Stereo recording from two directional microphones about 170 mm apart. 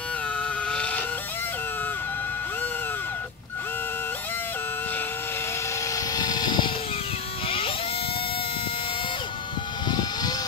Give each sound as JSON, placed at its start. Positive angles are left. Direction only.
{"t": 0.7, "sound": "chicken", "side_deg": 5}
{"t": 5.9, "sound": "vehicle", "side_deg": 25}
{"t": 7.4, "sound": "music", "side_deg": 35}
{"t": 9.8, "sound": "vehicle", "side_deg": 25}